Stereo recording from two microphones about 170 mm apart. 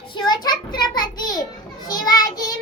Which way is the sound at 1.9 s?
25° left (ahead or behind).